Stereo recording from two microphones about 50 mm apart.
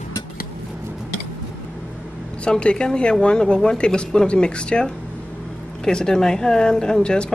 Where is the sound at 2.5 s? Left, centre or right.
Centre.